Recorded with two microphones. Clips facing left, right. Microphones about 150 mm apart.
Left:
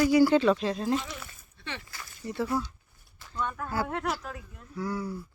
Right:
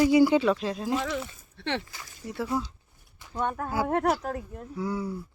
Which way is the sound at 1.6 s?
70° right (ahead or behind).